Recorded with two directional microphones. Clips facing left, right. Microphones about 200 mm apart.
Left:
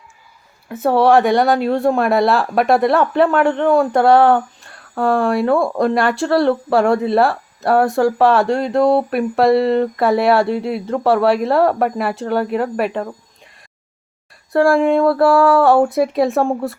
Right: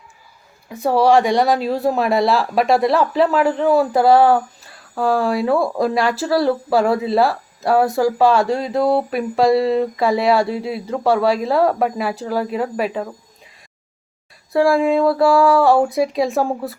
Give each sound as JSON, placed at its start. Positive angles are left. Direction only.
{"t": 0.7, "sound": "speech", "side_deg": 0}
{"t": 14.5, "sound": "speech", "side_deg": 0}